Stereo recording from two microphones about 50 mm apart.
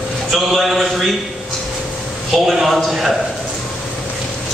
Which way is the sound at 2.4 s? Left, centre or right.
Centre.